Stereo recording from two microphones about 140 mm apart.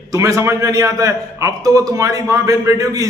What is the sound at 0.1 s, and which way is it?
A man's voice, 25° right (ahead or behind).